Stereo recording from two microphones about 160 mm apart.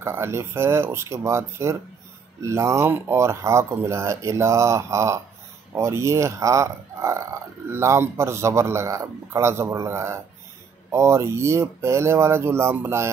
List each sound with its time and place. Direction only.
0.0 s speech: 15° right (ahead or behind)